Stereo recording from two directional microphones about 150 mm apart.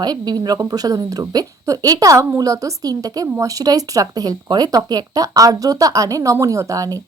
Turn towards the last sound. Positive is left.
turn(degrees=-20)  # may be behind; listen again after turning